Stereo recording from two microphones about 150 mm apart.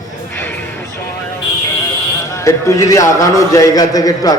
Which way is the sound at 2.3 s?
20° left (ahead or behind).